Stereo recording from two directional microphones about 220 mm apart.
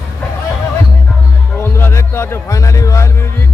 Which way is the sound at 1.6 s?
10° left (ahead or behind).